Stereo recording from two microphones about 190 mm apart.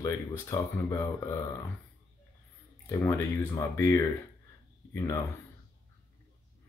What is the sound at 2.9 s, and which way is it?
Speech, 15° left (ahead or behind).